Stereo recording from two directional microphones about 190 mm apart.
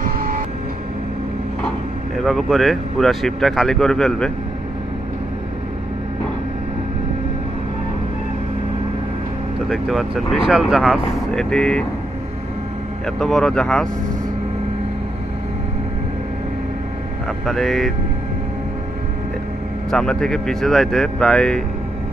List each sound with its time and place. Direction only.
0.0 s vehicle: 50° right (ahead or behind)
2.1 s speech: centre (ahead or behind)
9.7 s speech: centre (ahead or behind)
13.0 s speech: 5° left (ahead or behind)
17.5 s speech: centre (ahead or behind)
19.9 s speech: 5° left (ahead or behind)